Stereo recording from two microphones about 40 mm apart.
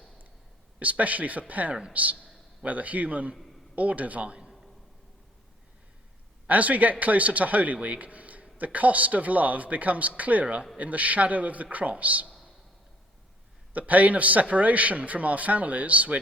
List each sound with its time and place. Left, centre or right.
0.8 s a man's voice: right
6.5 s a man's voice: right
10.4 s speech: right
10.8 s a man's voice: right
13.7 s a man's voice: right